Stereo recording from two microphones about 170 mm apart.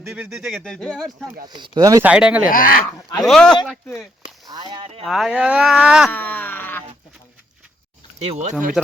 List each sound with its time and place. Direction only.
0.1 s speech: centre (ahead or behind)
1.5 s speech: 25° right (ahead or behind)
2.0 s speech: 5° right (ahead or behind)
2.4 s speech: 55° left (ahead or behind)
3.2 s speech: 5° left (ahead or behind)
4.4 s speech: 25° right (ahead or behind)
5.0 s speech: centre (ahead or behind)
6.1 s a sound: 10° left (ahead or behind)
8.2 s speech: 40° right (ahead or behind)